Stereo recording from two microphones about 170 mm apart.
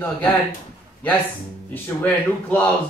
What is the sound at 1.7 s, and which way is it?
Speech, 10° left (ahead or behind).